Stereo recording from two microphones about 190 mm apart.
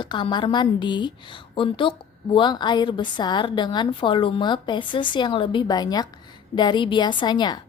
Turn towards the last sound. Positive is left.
turn(degrees=20)  # may be behind; listen again after turning